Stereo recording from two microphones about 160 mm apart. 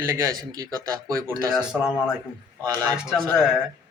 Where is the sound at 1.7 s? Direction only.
5° right (ahead or behind).